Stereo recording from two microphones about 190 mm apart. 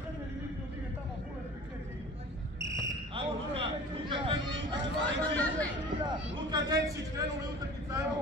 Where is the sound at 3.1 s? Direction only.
25° right (ahead or behind).